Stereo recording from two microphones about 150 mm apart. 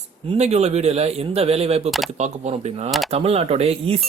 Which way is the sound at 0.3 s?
45° right (ahead or behind).